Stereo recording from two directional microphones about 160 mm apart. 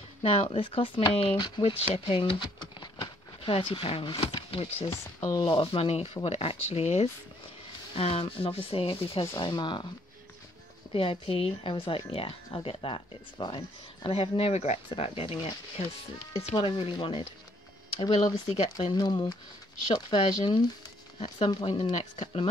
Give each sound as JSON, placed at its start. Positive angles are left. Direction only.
{"t": 0.2, "sound": "speech", "side_deg": 35}
{"t": 10.9, "sound": "speech", "side_deg": 35}
{"t": 16.5, "sound": "speech", "side_deg": 35}
{"t": 18.5, "sound": "speech", "side_deg": 30}